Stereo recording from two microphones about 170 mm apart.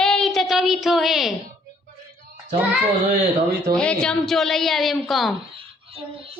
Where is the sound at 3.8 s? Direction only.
5° left (ahead or behind).